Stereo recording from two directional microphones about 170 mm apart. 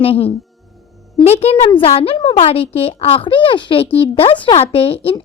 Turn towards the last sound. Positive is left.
turn(degrees=35)  # may be behind; listen again after turning